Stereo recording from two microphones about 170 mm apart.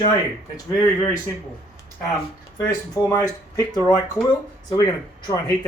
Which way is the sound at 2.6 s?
20° left (ahead or behind).